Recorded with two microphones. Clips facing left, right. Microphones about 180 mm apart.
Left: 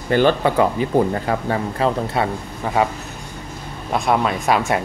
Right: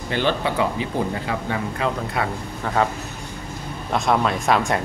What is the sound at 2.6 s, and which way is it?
Speech, 15° left (ahead or behind).